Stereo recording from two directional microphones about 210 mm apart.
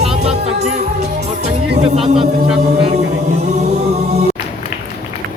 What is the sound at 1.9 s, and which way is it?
Speech, 25° right (ahead or behind).